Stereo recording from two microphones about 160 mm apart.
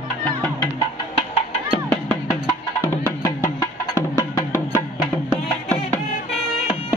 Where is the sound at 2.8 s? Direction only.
15° left (ahead or behind).